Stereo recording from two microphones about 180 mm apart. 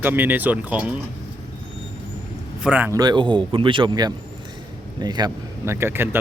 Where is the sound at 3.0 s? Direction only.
25° right (ahead or behind).